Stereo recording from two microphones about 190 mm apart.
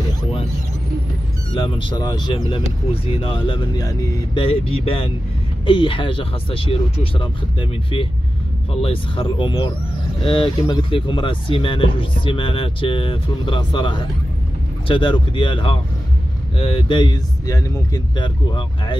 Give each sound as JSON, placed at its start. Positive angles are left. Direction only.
{"t": 1.5, "sound": "speech", "side_deg": 25}
{"t": 8.8, "sound": "speech", "side_deg": 25}